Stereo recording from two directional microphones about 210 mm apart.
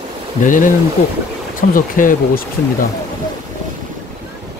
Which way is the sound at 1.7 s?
40° left (ahead or behind).